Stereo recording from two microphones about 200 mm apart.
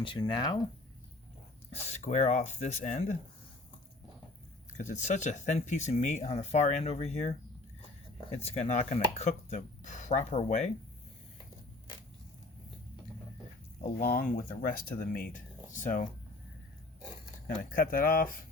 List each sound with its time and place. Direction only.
0.0 s speech: 25° left (ahead or behind)
1.9 s speech: 35° left (ahead or behind)
4.8 s speech: 35° left (ahead or behind)
8.4 s speech: 35° left (ahead or behind)
14.0 s speech: 45° left (ahead or behind)
17.6 s speech: 45° left (ahead or behind)